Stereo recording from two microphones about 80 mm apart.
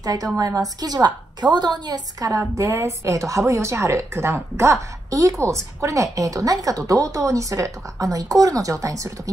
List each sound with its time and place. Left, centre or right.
0.0 s a woman's voice: right